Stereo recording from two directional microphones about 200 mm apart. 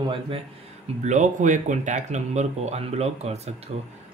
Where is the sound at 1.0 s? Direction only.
40° right (ahead or behind).